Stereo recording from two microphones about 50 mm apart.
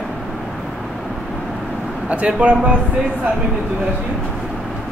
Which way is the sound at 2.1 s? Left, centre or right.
Right.